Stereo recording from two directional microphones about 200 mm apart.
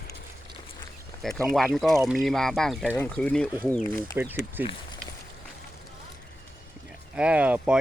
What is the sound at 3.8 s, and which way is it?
Speech, 15° left (ahead or behind).